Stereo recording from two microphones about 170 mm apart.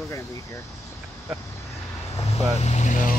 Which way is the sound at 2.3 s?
40° left (ahead or behind).